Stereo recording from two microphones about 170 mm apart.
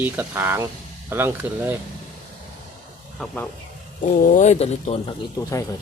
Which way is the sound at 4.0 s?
55° left (ahead or behind).